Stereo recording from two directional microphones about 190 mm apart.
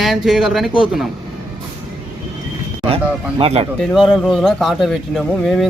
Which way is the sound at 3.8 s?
Centre (ahead or behind).